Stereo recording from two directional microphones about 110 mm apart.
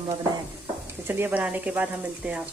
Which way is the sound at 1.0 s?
20° right (ahead or behind).